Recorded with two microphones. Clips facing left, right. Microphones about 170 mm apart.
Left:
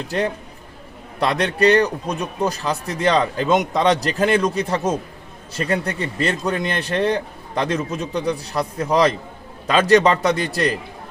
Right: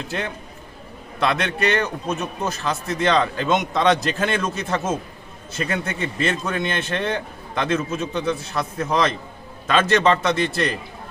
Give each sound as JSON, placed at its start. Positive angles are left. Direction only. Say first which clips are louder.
{"t": 0.1, "sound": "a man's voice", "louder": "left 6 dB", "side_deg": 40}
{"t": 2.0, "sound": "speech", "louder": "left 3 dB", "side_deg": 15}
{"t": 2.5, "sound": "a man's voice", "louder": "left 1 dB", "side_deg": 35}